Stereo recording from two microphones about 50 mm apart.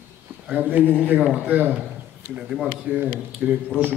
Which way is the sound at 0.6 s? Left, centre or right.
Right.